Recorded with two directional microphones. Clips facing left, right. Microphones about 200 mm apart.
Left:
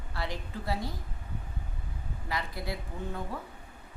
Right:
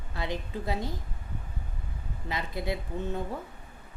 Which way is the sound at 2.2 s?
20° right (ahead or behind).